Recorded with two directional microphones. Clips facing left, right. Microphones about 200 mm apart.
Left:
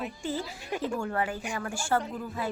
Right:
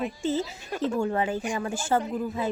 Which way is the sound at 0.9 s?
20° right (ahead or behind).